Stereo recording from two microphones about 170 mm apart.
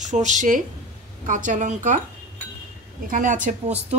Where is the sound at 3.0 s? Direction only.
50° right (ahead or behind).